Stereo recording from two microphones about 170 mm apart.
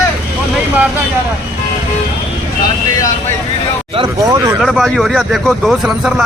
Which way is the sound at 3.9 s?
30° right (ahead or behind).